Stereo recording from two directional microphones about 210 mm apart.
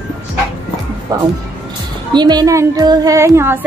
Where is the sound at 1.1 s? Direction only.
20° right (ahead or behind).